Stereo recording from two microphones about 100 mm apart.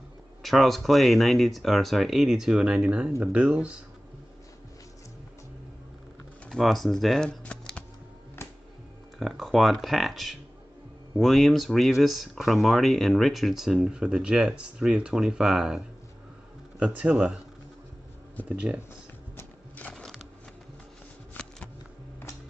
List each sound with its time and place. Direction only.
0.4 s speech: centre (ahead or behind)
6.5 s speech: centre (ahead or behind)
7.2 s shuffling cards: 10° left (ahead or behind)
8.4 s music: 25° left (ahead or behind)
9.2 s speech: centre (ahead or behind)
16.8 s a man's voice: 10° right (ahead or behind)
19.9 s music: 5° left (ahead or behind)
21.4 s a sound: 20° left (ahead or behind)